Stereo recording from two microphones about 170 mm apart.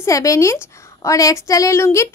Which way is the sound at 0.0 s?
20° left (ahead or behind).